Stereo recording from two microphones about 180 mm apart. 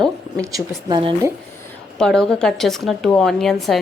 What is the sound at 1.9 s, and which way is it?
A woman's voice, 5° left (ahead or behind).